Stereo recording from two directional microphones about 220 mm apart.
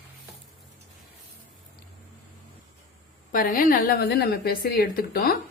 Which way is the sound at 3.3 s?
40° left (ahead or behind).